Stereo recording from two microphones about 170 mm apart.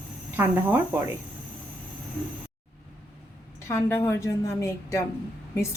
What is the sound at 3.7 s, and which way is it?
A woman's voice, 15° left (ahead or behind).